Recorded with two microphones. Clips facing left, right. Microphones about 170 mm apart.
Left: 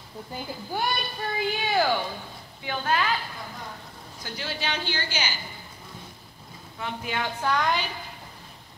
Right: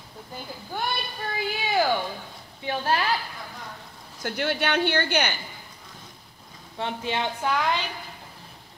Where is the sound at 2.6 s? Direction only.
30° right (ahead or behind).